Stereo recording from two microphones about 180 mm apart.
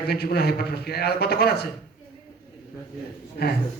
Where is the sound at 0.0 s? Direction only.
65° left (ahead or behind).